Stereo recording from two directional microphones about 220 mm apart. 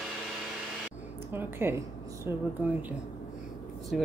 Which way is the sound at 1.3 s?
10° right (ahead or behind).